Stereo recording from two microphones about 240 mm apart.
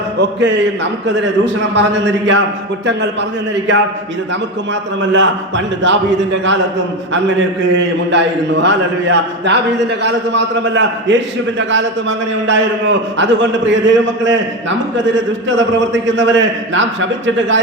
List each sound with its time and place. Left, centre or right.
0.2 s a man's voice: right
5.1 s a man's voice: right